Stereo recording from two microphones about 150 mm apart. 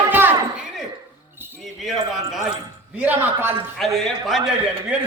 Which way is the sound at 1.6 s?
Centre (ahead or behind).